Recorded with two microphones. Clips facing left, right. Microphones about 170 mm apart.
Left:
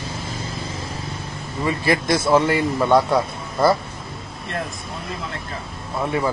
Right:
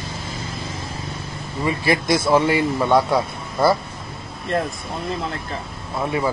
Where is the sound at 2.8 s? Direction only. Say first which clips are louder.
Left 2 dB; centre (ahead or behind).